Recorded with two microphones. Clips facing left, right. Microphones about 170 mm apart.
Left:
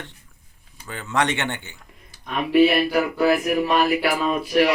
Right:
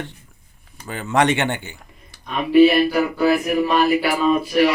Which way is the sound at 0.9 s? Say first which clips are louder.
Right 5 dB; 10° right (ahead or behind).